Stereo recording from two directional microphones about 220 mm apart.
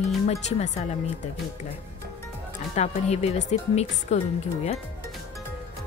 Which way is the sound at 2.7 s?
30° left (ahead or behind).